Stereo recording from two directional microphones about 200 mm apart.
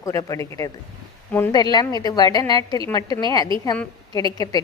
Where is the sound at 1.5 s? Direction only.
20° left (ahead or behind).